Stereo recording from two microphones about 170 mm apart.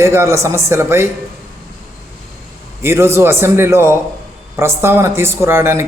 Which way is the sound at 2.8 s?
15° right (ahead or behind).